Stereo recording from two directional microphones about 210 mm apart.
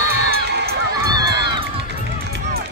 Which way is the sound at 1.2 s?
55° right (ahead or behind).